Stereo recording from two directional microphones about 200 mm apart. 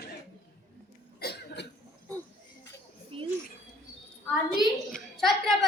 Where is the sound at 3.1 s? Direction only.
25° right (ahead or behind).